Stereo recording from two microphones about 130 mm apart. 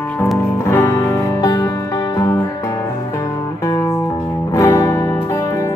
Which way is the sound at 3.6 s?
25° left (ahead or behind).